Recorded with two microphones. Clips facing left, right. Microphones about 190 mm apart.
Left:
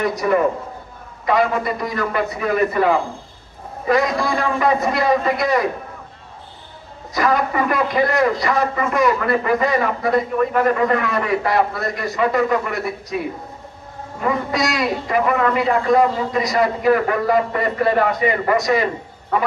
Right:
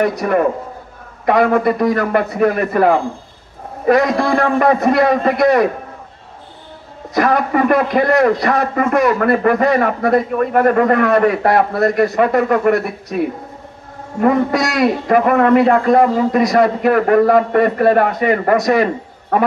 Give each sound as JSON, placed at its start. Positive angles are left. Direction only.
{"t": 0.0, "sound": "a man's voice", "side_deg": -60}
{"t": 7.2, "sound": "a man's voice", "side_deg": -60}
{"t": 14.2, "sound": "a man's voice", "side_deg": -60}